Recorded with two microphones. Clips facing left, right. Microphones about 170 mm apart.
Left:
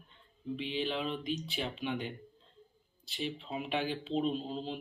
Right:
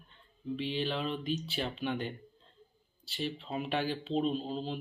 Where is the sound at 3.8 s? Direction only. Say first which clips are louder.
Right 1 dB; 40° right (ahead or behind).